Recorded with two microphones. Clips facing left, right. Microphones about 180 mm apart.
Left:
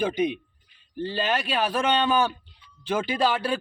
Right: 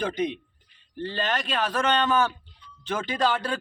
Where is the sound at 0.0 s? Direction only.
10° left (ahead or behind).